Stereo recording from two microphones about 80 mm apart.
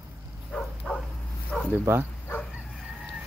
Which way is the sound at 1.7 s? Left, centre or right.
Right.